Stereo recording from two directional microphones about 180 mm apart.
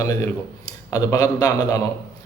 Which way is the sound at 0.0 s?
20° left (ahead or behind).